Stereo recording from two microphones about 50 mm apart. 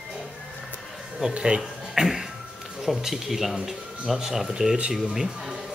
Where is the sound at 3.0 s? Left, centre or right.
Centre.